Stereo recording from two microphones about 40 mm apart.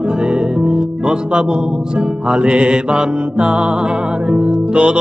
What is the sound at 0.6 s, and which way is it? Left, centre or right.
Music, right.